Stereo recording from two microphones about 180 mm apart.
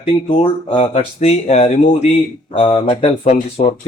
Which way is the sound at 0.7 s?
40° left (ahead or behind).